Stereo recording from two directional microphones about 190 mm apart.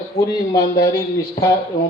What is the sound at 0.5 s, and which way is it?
Speech, 20° left (ahead or behind).